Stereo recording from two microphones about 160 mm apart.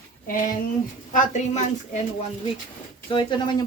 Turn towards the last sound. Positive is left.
turn(degrees=30)  # may be behind; listen again after turning